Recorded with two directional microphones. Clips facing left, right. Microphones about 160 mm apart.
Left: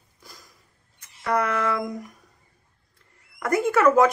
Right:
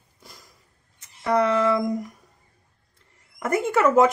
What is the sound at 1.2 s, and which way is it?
Speech, 20° right (ahead or behind).